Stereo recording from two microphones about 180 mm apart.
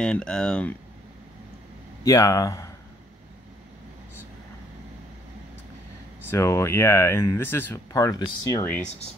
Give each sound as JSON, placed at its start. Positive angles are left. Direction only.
{"t": 0.0, "sound": "speech", "side_deg": 5}
{"t": 2.0, "sound": "speech", "side_deg": 15}
{"t": 6.3, "sound": "speech", "side_deg": 15}